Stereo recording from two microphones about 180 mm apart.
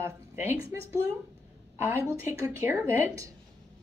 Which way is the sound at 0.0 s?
15° right (ahead or behind).